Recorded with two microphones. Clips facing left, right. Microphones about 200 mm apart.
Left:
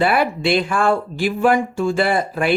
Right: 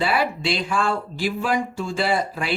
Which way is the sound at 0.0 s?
55° left (ahead or behind).